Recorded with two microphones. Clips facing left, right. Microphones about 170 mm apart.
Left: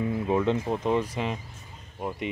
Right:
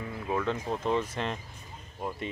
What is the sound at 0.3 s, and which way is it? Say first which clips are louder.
Speech: left 4 dB; 20° left (ahead or behind).